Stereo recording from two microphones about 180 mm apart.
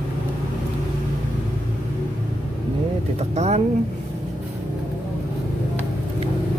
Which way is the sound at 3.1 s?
40° right (ahead or behind).